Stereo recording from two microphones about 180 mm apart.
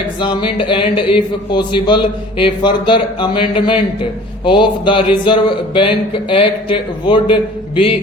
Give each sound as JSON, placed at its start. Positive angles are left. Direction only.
{"t": 0.2, "sound": "speech", "side_deg": 25}